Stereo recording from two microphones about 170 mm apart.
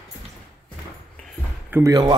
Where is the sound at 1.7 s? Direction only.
20° right (ahead or behind).